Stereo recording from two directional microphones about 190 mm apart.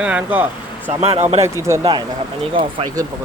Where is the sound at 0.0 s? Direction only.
5° right (ahead or behind).